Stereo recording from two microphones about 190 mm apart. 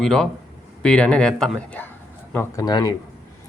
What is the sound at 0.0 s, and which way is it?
Speech, 5° left (ahead or behind).